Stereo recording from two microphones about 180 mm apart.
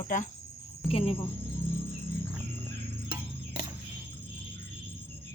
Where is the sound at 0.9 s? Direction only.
35° left (ahead or behind).